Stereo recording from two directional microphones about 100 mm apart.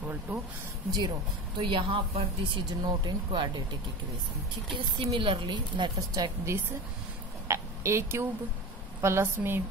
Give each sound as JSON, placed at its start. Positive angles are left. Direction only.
{"t": 0.3, "sound": "speech", "side_deg": -15}
{"t": 1.6, "sound": "speech", "side_deg": -60}
{"t": 4.7, "sound": "speech", "side_deg": -65}
{"t": 5.9, "sound": "a woman's voice", "side_deg": -35}
{"t": 7.4, "sound": "a sound", "side_deg": -30}
{"t": 9.0, "sound": "a woman's voice", "side_deg": -25}